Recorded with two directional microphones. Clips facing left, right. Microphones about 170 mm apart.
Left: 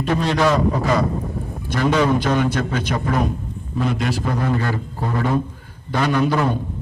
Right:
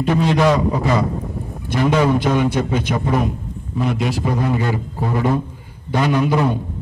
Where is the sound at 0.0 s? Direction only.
10° right (ahead or behind).